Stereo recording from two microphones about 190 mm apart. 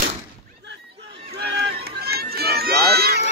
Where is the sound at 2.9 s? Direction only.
55° right (ahead or behind).